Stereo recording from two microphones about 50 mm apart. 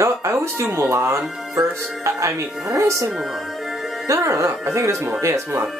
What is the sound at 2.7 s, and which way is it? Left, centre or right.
Speech, right.